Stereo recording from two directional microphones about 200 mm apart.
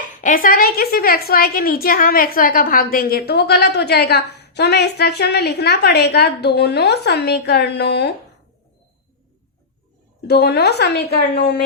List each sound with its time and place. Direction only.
0.2 s a woman's voice: 45° left (ahead or behind)
10.2 s a woman's voice: 55° left (ahead or behind)